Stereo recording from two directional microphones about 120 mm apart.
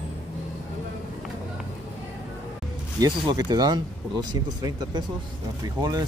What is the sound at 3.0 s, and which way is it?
Speech, 35° right (ahead or behind).